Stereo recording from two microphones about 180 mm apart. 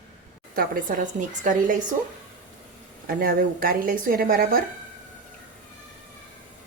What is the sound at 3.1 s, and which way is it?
A woman's voice, 55° right (ahead or behind).